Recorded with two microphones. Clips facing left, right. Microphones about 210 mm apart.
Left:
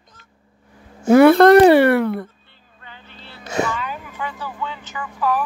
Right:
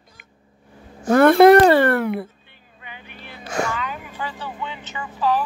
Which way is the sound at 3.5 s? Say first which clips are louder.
Left 2 dB; 20° left (ahead or behind).